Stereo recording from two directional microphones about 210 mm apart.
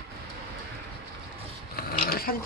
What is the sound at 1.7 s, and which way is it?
Filing, 45° left (ahead or behind).